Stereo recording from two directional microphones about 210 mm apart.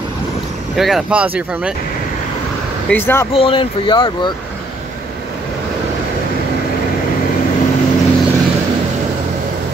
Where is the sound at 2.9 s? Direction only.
10° left (ahead or behind).